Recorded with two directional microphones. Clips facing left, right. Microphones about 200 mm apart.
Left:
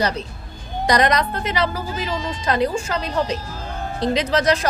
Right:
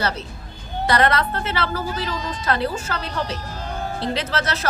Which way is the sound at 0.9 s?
15° left (ahead or behind).